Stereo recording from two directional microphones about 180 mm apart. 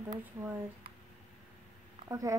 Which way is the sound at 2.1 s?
20° right (ahead or behind).